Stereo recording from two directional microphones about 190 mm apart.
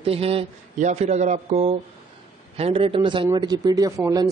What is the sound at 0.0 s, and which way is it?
Speech, 30° right (ahead or behind).